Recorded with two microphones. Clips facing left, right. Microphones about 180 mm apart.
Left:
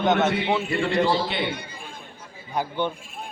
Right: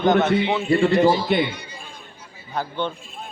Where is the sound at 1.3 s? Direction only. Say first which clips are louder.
Right 8 dB; 45° right (ahead or behind).